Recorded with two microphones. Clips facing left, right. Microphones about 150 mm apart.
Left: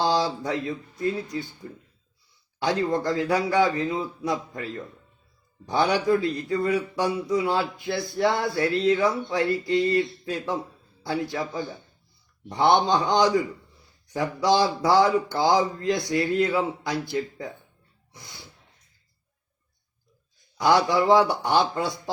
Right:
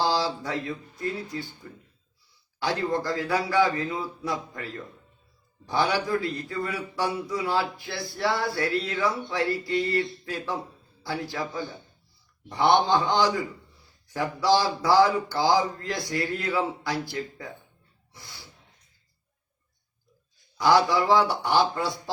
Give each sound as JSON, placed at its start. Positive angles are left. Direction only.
{"t": 0.0, "sound": "a man's voice", "side_deg": 20}
{"t": 2.6, "sound": "a man's voice", "side_deg": 20}
{"t": 20.6, "sound": "a man's voice", "side_deg": 25}